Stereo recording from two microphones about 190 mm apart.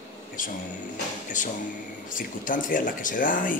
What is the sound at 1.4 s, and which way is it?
Speech, 40° left (ahead or behind).